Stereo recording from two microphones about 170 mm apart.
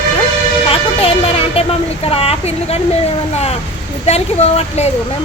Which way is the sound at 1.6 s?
35° left (ahead or behind).